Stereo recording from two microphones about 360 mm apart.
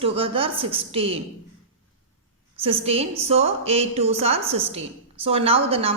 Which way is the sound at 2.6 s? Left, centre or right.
Centre.